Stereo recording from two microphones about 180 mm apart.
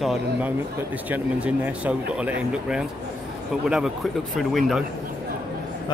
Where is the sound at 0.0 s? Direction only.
Centre (ahead or behind).